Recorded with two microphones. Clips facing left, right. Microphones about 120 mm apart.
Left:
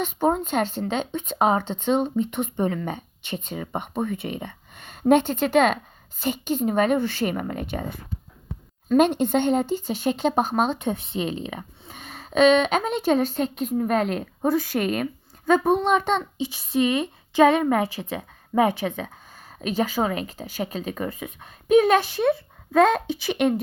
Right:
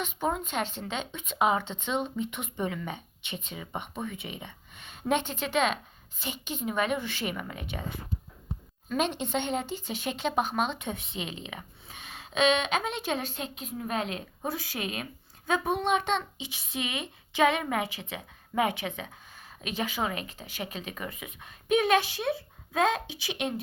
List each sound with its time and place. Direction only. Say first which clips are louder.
0.0 s speech: left 8 dB; 40° left (ahead or behind); by 23.6 s 55° left (ahead or behind)